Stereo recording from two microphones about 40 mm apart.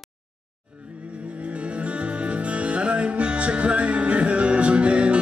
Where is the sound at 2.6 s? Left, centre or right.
Right.